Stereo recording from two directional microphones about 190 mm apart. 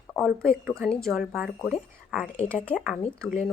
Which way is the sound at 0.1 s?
Centre (ahead or behind).